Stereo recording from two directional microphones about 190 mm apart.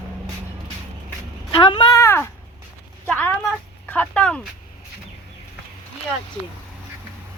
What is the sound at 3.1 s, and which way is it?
Speech, 10° left (ahead or behind).